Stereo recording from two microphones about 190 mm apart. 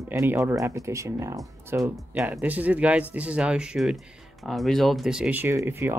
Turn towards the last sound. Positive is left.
turn(degrees=-10)  # may be behind; listen again after turning